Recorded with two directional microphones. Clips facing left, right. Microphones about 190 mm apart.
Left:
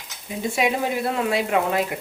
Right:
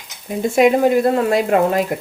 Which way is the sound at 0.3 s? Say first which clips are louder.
Right 9 dB; 50° right (ahead or behind).